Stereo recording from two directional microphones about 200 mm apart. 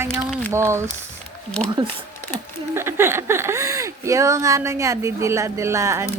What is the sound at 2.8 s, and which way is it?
Speech, 10° right (ahead or behind).